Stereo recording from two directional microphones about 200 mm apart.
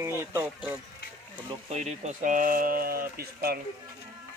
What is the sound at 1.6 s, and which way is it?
Speech, 35° right (ahead or behind).